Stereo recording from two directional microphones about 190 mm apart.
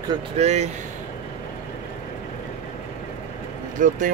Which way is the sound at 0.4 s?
35° right (ahead or behind).